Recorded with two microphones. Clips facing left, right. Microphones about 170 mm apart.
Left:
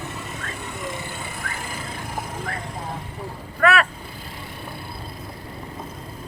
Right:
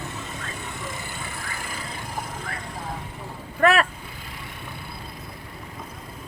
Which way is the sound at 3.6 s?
40° right (ahead or behind).